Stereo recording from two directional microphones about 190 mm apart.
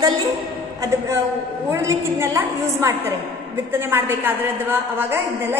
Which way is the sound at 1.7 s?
15° right (ahead or behind).